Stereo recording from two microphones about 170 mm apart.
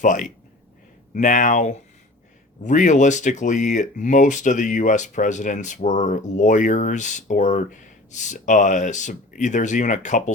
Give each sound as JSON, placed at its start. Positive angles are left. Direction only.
{"t": 0.0, "sound": "speech", "side_deg": 50}